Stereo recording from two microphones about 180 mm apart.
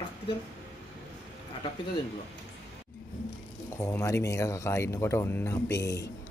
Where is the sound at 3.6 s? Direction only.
15° left (ahead or behind).